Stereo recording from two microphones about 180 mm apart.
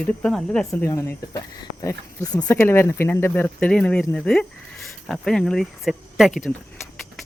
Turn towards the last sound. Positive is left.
turn(degrees=0)  # may be behind; listen again after turning